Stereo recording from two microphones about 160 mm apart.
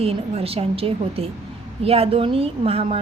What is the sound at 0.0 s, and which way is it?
A woman's voice, 35° right (ahead or behind).